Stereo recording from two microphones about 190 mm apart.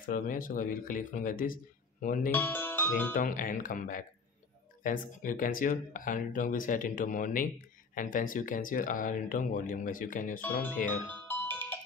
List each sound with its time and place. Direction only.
0.0 s speech: 45° left (ahead or behind)
2.3 s speech: 10° left (ahead or behind)
3.1 s speech: 45° left (ahead or behind)
11.1 s music: 10° left (ahead or behind)